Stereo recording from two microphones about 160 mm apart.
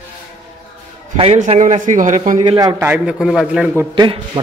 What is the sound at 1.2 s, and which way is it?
A man's voice, 40° right (ahead or behind).